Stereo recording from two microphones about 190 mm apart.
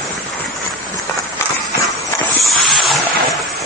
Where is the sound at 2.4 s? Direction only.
Centre (ahead or behind).